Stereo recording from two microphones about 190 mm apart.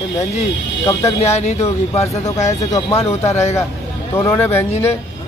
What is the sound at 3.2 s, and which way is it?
A man's voice, 15° left (ahead or behind).